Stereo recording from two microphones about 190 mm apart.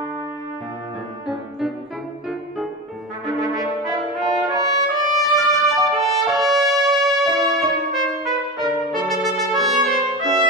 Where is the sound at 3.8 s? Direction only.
Centre (ahead or behind).